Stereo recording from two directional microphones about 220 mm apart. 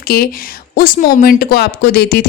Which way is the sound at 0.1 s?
45° left (ahead or behind).